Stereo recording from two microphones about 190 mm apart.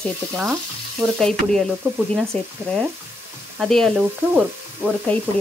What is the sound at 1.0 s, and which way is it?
Frying, 15° right (ahead or behind).